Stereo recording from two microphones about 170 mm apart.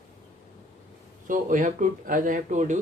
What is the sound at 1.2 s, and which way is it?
Speech, 50° right (ahead or behind).